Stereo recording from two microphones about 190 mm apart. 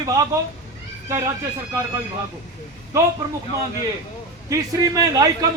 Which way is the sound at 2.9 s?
15° right (ahead or behind).